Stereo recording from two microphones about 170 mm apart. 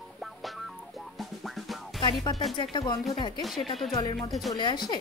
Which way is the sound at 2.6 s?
25° left (ahead or behind).